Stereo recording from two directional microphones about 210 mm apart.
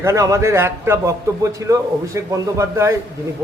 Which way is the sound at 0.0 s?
15° right (ahead or behind).